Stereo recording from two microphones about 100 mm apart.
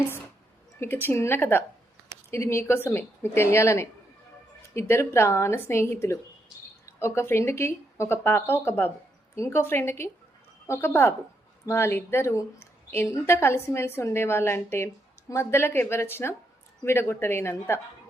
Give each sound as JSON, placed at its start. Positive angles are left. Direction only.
{"t": 0.8, "sound": "speech", "side_deg": 25}